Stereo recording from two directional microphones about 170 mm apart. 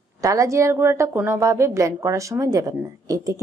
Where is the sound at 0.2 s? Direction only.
20° right (ahead or behind).